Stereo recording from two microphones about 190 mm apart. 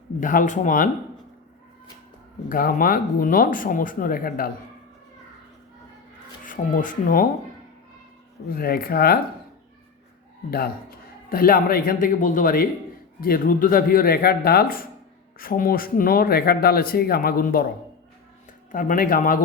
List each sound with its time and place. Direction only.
0.2 s speech: 45° left (ahead or behind)
2.5 s speech: 50° left (ahead or behind)
6.4 s speech: 45° left (ahead or behind)
8.4 s speech: 50° left (ahead or behind)
11.3 s speech: 50° left (ahead or behind)
18.7 s speech: 45° left (ahead or behind)